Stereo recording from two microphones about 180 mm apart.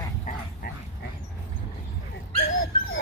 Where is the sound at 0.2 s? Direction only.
55° left (ahead or behind).